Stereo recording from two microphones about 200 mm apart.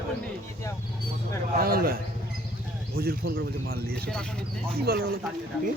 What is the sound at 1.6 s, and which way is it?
Speech, 45° right (ahead or behind).